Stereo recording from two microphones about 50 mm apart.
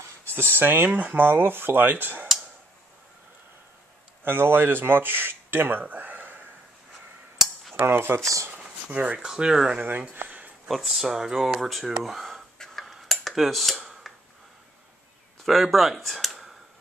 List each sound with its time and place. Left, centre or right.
0.3 s speech: right
4.2 s speech: right
7.7 s cutlery: right
9.2 s speech: centre
9.8 s speech: right
10.7 s speech: centre
12.5 s a sound: centre
12.8 s cutlery: centre
13.7 s a sound: centre
15.4 s speech: centre